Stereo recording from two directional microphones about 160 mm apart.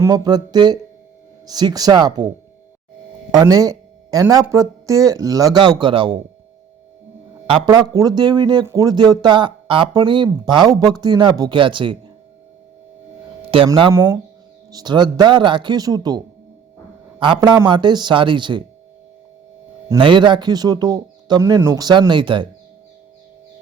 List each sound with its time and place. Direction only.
0.0 s speech: 25° right (ahead or behind)
3.3 s speech: 25° right (ahead or behind)
7.4 s speech: 30° right (ahead or behind)
13.7 s speech: 30° right (ahead or behind)
13.9 s speech: 20° right (ahead or behind)
19.9 s speech: 30° right (ahead or behind)